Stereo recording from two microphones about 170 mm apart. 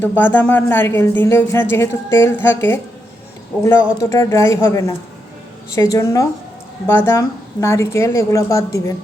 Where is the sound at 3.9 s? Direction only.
15° left (ahead or behind).